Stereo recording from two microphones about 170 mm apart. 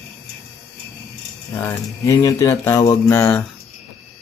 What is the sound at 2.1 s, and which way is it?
Speech, 20° left (ahead or behind).